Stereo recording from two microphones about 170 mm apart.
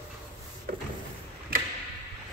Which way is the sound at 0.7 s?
60° right (ahead or behind).